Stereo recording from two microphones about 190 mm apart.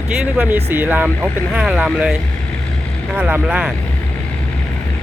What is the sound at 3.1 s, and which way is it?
Speech, 5° right (ahead or behind).